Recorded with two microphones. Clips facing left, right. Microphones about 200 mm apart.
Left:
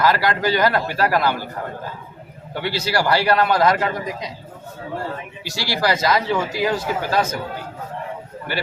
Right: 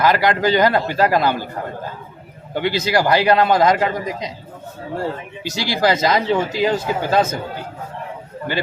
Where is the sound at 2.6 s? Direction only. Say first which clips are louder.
Right 4 dB; 20° right (ahead or behind).